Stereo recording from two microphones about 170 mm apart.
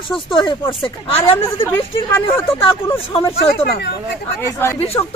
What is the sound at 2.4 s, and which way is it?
Speech, 30° left (ahead or behind).